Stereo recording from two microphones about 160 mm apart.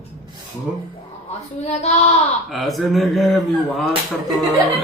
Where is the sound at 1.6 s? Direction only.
45° left (ahead or behind).